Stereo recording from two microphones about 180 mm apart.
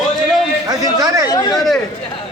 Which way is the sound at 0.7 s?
20° right (ahead or behind).